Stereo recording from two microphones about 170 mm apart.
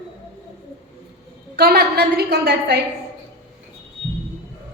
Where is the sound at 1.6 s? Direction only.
65° right (ahead or behind).